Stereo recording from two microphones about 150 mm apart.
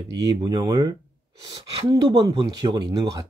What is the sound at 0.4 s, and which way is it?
Speech, 30° right (ahead or behind).